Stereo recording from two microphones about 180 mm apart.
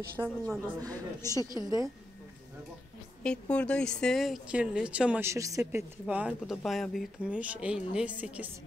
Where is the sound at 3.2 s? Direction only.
5° left (ahead or behind).